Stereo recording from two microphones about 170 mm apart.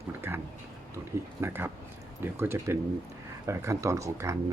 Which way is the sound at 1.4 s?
15° right (ahead or behind).